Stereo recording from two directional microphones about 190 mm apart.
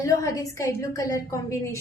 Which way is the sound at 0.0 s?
15° left (ahead or behind).